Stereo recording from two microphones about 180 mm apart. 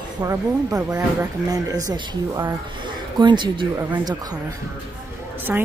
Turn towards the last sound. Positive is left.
turn(degrees=-10)  # may be behind; listen again after turning